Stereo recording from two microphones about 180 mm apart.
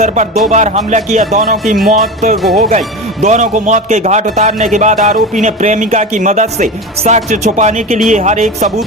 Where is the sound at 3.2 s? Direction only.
40° right (ahead or behind).